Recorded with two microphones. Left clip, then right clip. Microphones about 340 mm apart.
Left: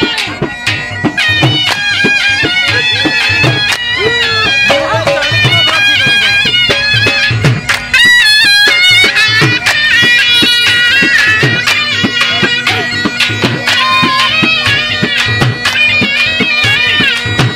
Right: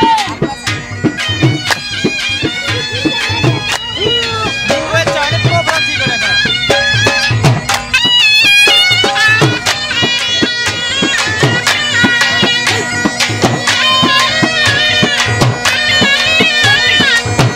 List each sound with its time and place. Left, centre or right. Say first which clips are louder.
7.4 s music: left 1 dB; centre
9.9 s music: left 7 dB; centre
16.3 s bagpipes: right 1 dB; right